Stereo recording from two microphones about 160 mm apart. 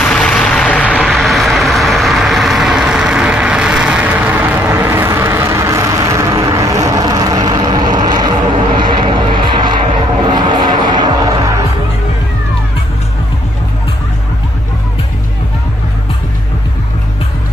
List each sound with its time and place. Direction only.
0.0 s vehicle: 5° left (ahead or behind); by 9.8 s 30° right (ahead or behind)
10.3 s music: 30° right (ahead or behind)